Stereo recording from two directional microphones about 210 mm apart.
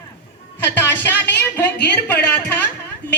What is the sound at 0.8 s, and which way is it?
Music, 10° left (ahead or behind).